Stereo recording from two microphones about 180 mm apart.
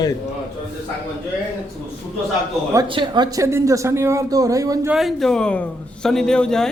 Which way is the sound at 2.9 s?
25° right (ahead or behind).